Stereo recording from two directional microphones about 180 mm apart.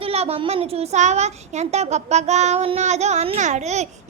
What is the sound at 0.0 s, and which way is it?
A child's voice, 35° right (ahead or behind).